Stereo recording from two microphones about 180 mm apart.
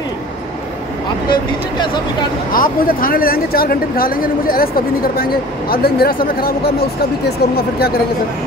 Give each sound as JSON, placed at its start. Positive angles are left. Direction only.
{"t": 2.5, "sound": "speech", "side_deg": 50}